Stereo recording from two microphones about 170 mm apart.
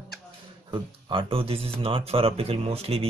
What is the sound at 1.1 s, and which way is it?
Speech, 30° right (ahead or behind).